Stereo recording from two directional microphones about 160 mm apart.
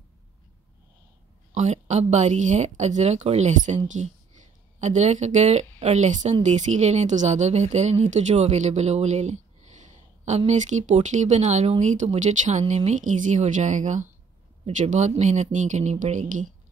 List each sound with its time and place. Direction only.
1.5 s speech: 45° right (ahead or behind)